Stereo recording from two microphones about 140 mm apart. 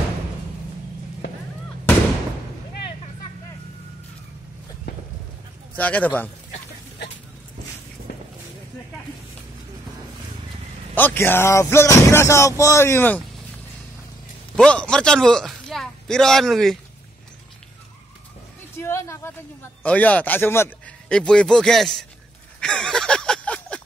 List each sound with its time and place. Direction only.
5.8 s speech: 10° left (ahead or behind)
11.0 s speech: 15° left (ahead or behind)
14.6 s a man's voice: 5° left (ahead or behind)
18.8 s a sound: 20° left (ahead or behind)
19.8 s a man's voice: 10° left (ahead or behind)
22.6 s a sound: 5° left (ahead or behind)